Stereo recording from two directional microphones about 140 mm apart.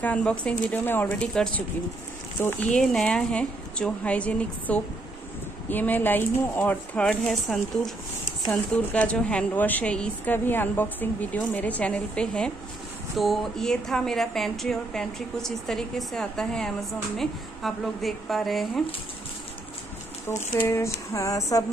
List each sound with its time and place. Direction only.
0.0 s a woman's voice: 10° left (ahead or behind)
2.6 s a woman's voice: 5° left (ahead or behind)
20.2 s speech: 15° left (ahead or behind)